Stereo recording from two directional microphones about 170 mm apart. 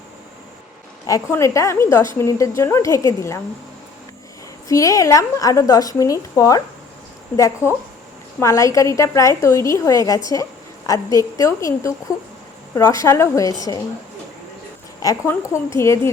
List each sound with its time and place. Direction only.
1.0 s a woman's voice: 20° left (ahead or behind)
4.7 s a woman's voice: 20° left (ahead or behind)
15.0 s a woman's voice: 20° left (ahead or behind)